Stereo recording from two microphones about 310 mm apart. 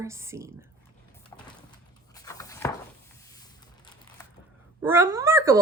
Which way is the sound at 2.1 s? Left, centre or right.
Centre.